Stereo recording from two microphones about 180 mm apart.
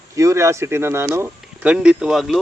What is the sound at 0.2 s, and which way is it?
Speech, 15° right (ahead or behind).